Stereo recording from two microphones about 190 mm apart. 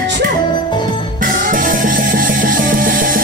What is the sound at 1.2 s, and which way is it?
Music, 45° right (ahead or behind).